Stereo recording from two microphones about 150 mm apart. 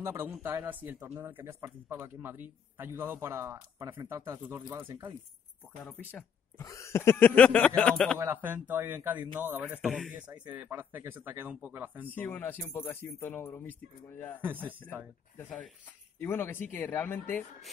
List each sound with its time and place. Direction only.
0.0 s speech: 15° right (ahead or behind)
6.6 s speech: 20° left (ahead or behind)
8.2 s speech: 15° right (ahead or behind)
9.8 s speech: centre (ahead or behind)
12.1 s speech: 10° left (ahead or behind)
14.4 s speech: 10° right (ahead or behind)
16.2 s speech: 15° left (ahead or behind)